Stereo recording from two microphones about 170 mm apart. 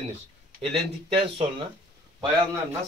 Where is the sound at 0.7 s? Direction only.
35° right (ahead or behind).